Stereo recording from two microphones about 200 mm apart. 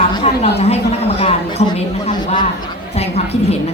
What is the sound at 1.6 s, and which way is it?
Speech, 35° left (ahead or behind).